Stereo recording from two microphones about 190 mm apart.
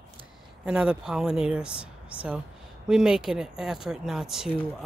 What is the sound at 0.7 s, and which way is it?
Speech, 5° right (ahead or behind).